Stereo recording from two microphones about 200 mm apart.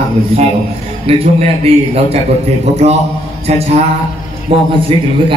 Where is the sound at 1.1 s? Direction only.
30° right (ahead or behind).